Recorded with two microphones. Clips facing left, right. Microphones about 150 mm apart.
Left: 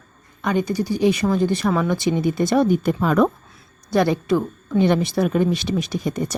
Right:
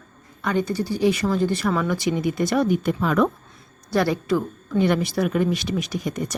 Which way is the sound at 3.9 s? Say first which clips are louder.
Left 3 dB; 20° left (ahead or behind).